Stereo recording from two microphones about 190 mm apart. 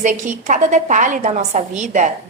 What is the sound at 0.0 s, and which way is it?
A woman's voice, 40° right (ahead or behind).